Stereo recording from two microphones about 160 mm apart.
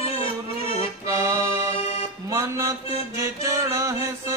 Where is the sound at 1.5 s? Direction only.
40° left (ahead or behind).